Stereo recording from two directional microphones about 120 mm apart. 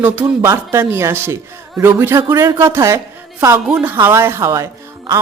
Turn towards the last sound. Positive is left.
turn(degrees=-25)  # may be behind; listen again after turning